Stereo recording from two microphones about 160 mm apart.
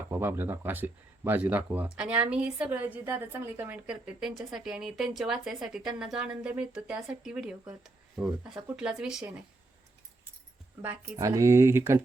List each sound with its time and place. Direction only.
0.1 s speech: 15° right (ahead or behind)
10.8 s speech: 20° right (ahead or behind)